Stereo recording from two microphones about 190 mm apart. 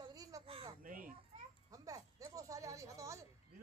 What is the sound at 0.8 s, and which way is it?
Children playing, 45° right (ahead or behind).